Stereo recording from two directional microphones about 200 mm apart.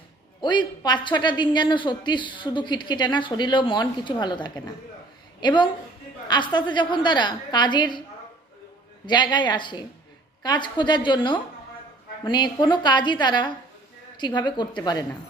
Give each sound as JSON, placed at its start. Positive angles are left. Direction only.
{"t": 0.4, "sound": "a woman's voice", "side_deg": 20}
{"t": 9.0, "sound": "a woman's voice", "side_deg": 20}